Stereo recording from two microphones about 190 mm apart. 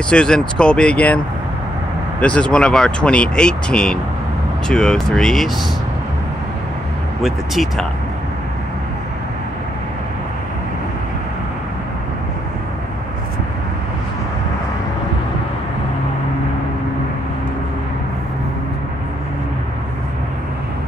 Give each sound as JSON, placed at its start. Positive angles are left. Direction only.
{"t": 0.1, "sound": "speech", "side_deg": 5}
{"t": 7.2, "sound": "speech", "side_deg": 0}